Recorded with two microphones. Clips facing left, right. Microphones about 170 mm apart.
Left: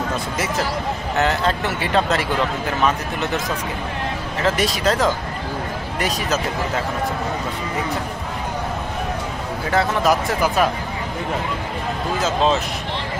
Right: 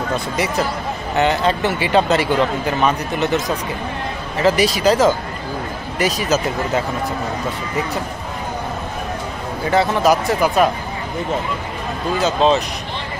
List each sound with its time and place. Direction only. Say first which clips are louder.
1.1 s speech: right 3 dB; centre (ahead or behind)
4.4 s speech: right 5 dB; centre (ahead or behind)
9.7 s speech: right 3 dB; centre (ahead or behind)
12.2 s speech: right 4 dB; centre (ahead or behind)